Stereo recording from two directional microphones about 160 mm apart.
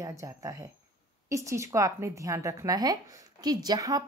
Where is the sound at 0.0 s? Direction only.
20° right (ahead or behind).